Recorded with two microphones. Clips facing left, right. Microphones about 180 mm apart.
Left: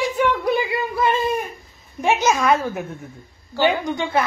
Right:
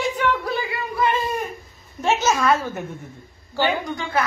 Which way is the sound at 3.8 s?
25° left (ahead or behind).